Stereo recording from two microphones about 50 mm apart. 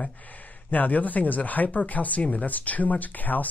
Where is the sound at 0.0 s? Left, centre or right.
Left.